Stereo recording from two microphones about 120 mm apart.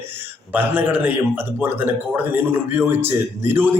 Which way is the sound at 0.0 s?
20° right (ahead or behind).